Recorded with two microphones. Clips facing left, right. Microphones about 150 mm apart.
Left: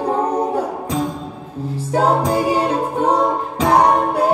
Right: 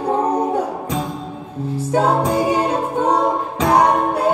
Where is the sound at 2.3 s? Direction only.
30° left (ahead or behind).